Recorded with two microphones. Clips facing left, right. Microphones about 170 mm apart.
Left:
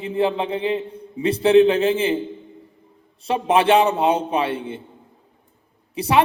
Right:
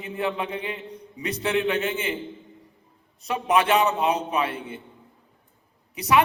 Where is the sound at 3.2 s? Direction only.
30° left (ahead or behind).